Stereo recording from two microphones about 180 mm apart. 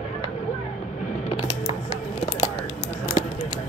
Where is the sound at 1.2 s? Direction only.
30° left (ahead or behind).